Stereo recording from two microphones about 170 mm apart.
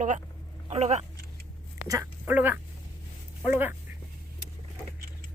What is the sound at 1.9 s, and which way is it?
Speech, 15° right (ahead or behind).